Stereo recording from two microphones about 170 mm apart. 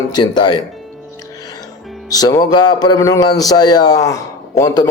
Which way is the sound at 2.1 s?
20° left (ahead or behind).